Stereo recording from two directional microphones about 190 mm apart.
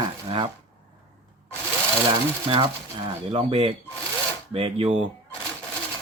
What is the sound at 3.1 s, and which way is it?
Speech, 30° right (ahead or behind).